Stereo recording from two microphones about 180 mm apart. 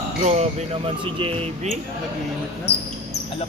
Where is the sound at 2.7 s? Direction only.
65° left (ahead or behind).